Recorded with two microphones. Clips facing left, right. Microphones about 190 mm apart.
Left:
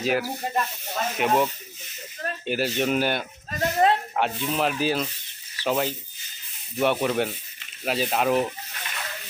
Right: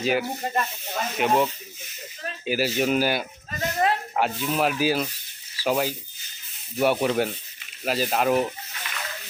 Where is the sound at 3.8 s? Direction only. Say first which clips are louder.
Left 3 dB; 30° left (ahead or behind).